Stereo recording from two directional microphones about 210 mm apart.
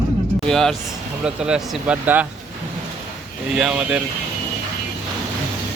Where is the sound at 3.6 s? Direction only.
5° right (ahead or behind).